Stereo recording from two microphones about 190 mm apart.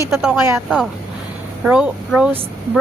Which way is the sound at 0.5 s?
Centre (ahead or behind).